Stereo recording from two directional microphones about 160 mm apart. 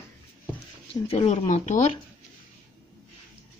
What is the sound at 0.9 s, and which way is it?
Speech, 35° left (ahead or behind).